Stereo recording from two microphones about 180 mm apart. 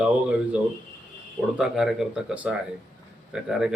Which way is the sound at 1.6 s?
5° right (ahead or behind).